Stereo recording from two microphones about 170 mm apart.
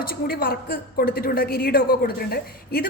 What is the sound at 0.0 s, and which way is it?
A woman's voice, 60° left (ahead or behind).